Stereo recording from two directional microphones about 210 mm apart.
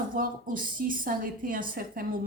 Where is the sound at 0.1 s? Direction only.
40° right (ahead or behind).